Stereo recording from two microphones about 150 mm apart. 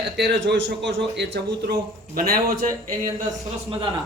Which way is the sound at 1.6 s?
90° right.